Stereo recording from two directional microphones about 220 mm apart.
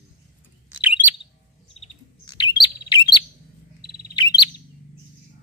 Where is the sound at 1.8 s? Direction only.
20° left (ahead or behind).